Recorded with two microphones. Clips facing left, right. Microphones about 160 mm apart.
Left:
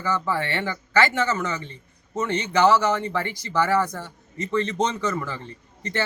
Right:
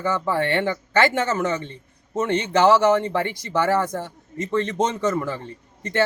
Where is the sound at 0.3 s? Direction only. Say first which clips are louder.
Right 4 dB; 55° right (ahead or behind).